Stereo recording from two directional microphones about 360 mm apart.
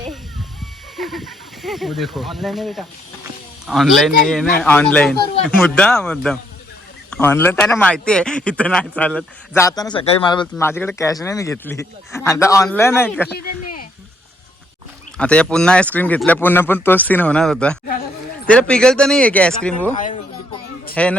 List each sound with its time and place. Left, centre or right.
0.9 s speech: centre
13.3 s speech: left
15.2 s speech: centre
19.9 s a sound: centre
20.9 s speech: centre